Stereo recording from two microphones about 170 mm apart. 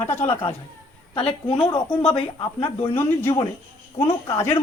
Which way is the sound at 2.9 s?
15° left (ahead or behind).